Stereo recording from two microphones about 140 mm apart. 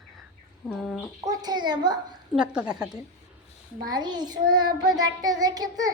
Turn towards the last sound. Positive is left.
turn(degrees=-25)  # may be behind; listen again after turning